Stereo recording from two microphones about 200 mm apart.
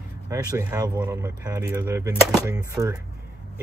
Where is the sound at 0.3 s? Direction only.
15° right (ahead or behind).